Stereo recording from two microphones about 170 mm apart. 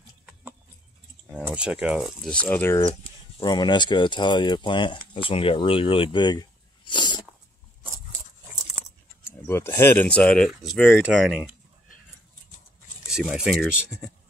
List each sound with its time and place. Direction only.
1.3 s speech: 5° right (ahead or behind); by 2.8 s 10° left (ahead or behind)
3.4 s speech: 25° left (ahead or behind)
9.5 s speech: 15° left (ahead or behind); by 11.3 s 5° right (ahead or behind)
13.1 s speech: 5° right (ahead or behind)